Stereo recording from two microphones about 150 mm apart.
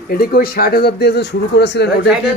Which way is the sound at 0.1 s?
90° left.